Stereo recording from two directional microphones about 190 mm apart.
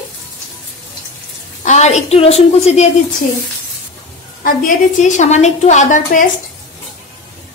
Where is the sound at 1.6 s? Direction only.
35° left (ahead or behind).